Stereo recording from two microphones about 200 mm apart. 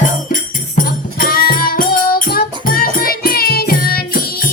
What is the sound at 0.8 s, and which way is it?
Music, 45° left (ahead or behind).